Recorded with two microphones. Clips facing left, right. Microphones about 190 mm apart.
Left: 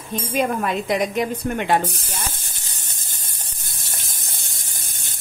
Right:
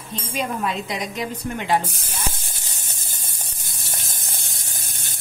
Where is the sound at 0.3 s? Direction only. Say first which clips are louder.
Left 4 dB; 55° left (ahead or behind).